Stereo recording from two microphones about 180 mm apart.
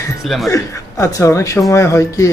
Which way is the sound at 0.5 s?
20° left (ahead or behind).